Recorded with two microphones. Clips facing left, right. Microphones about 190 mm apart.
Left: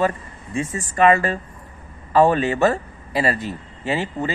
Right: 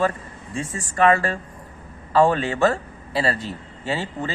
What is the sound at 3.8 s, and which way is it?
Speech, 15° left (ahead or behind).